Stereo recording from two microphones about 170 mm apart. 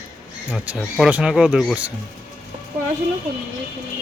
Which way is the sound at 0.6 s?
10° right (ahead or behind).